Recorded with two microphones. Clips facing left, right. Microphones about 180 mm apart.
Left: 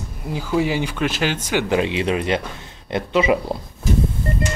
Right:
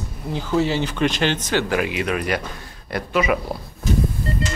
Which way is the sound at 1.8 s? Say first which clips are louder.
Left 2 dB; 25° left (ahead or behind).